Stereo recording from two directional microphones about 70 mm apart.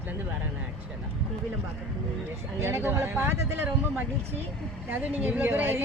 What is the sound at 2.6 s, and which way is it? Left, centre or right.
Speech, right.